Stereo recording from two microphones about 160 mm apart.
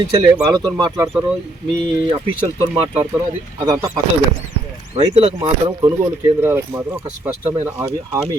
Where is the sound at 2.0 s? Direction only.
35° right (ahead or behind).